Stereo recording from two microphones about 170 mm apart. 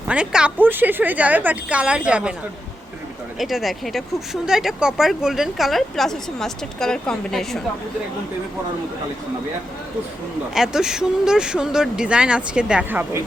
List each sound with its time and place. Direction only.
0.1 s a woman's voice: 5° right (ahead or behind)
3.3 s speech: centre (ahead or behind)
10.5 s speech: 5° right (ahead or behind)